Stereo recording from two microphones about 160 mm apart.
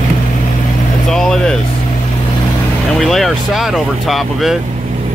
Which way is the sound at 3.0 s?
Centre (ahead or behind).